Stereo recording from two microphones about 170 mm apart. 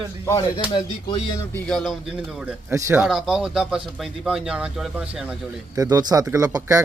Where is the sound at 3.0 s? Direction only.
5° right (ahead or behind).